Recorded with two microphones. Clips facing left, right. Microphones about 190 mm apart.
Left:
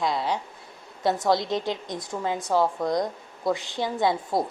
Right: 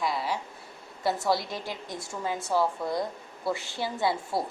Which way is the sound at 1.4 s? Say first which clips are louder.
Left 8 dB; 20° left (ahead or behind).